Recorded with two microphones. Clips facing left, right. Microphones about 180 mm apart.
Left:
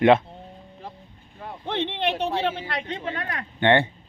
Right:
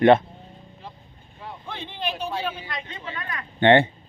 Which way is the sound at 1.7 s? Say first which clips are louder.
Left 7 dB; 70° left (ahead or behind).